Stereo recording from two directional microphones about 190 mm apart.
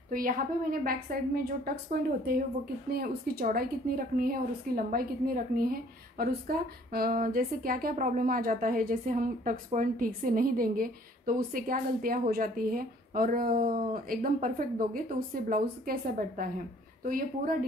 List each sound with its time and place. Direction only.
0.1 s a woman's voice: 45° right (ahead or behind)
2.9 s a woman's voice: 55° right (ahead or behind)